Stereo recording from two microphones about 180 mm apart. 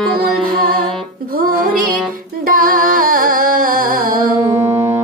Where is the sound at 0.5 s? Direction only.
55° right (ahead or behind).